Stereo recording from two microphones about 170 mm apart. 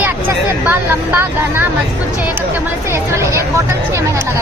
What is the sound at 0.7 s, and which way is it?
Speech, 10° right (ahead or behind).